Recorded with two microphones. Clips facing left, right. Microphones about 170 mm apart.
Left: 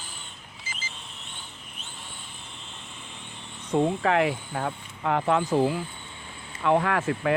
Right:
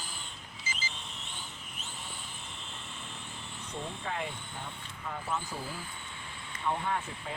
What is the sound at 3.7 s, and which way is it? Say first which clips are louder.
Speech: left 16 dB; 90° left.